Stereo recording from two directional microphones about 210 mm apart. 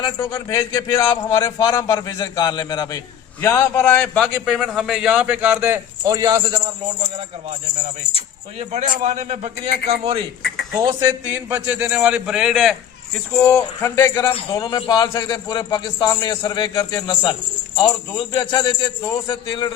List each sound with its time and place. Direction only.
0.0 s a man's voice: 20° left (ahead or behind); by 6.6 s 20° right (ahead or behind)
8.5 s a man's voice: 35° right (ahead or behind)
10.0 s speech: 25° right (ahead or behind)
10.8 s a man's voice: 15° right (ahead or behind)
13.3 s speech: 10° left (ahead or behind)
18.3 s speech: 20° left (ahead or behind)